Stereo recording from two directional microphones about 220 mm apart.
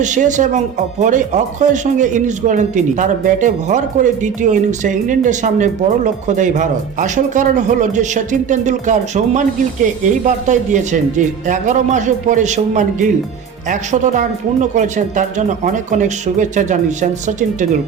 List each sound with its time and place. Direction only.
0.0 s speech: 35° right (ahead or behind)